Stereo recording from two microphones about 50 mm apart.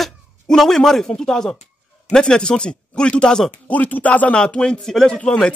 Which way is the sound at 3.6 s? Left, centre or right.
Left.